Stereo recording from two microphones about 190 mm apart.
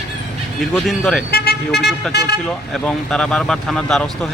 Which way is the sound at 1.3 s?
55° left (ahead or behind).